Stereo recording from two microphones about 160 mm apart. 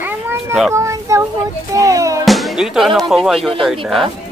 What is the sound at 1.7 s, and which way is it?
Music, 20° right (ahead or behind).